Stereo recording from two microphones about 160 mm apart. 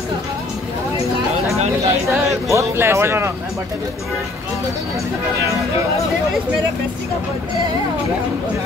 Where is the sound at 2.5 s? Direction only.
15° right (ahead or behind).